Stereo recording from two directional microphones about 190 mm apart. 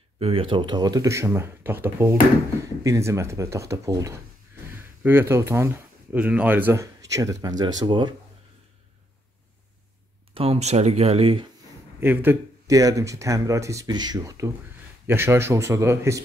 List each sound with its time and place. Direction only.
0.2 s speech: 30° right (ahead or behind)
10.3 s speech: 30° right (ahead or behind)
12.0 s speech: 10° right (ahead or behind)